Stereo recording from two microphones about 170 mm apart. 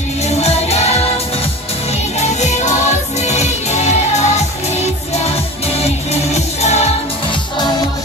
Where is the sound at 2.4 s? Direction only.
45° left (ahead or behind).